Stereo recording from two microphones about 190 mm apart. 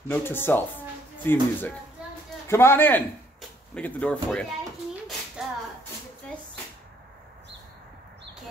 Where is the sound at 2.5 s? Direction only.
15° left (ahead or behind).